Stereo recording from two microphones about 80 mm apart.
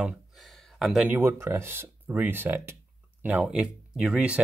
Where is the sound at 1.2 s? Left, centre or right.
Right.